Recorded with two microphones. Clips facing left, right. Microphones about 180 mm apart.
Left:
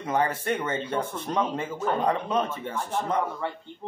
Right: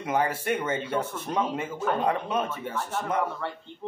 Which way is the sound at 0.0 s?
10° right (ahead or behind).